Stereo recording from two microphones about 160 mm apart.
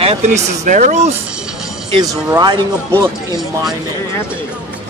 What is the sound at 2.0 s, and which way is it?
Speech, 25° right (ahead or behind).